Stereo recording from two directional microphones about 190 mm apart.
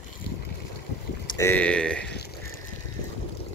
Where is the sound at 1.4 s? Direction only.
10° left (ahead or behind).